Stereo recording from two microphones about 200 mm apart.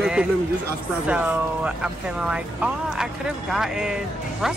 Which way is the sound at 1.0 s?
5° right (ahead or behind).